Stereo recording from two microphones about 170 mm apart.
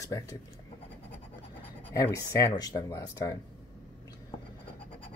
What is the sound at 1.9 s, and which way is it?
Speech, 20° left (ahead or behind).